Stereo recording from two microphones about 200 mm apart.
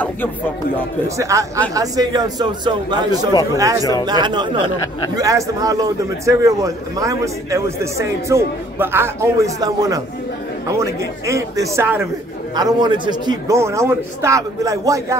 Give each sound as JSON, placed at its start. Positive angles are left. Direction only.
{"t": 1.0, "sound": "a man's voice", "side_deg": -15}